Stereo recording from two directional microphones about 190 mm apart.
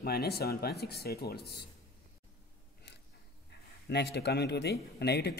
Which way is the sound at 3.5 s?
60° left (ahead or behind).